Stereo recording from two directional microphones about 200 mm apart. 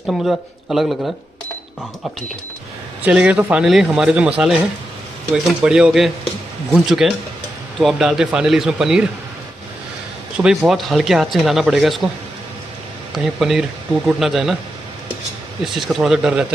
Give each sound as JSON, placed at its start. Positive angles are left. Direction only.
{"t": 0.0, "sound": "speech", "side_deg": 0}
{"t": 3.1, "sound": "speech", "side_deg": -5}
{"t": 10.3, "sound": "speech", "side_deg": -5}
{"t": 13.1, "sound": "speech", "side_deg": 0}
{"t": 15.6, "sound": "speech", "side_deg": 0}